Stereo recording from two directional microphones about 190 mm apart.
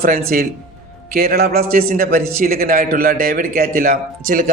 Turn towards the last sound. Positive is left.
turn(degrees=-45)  # may be behind; listen again after turning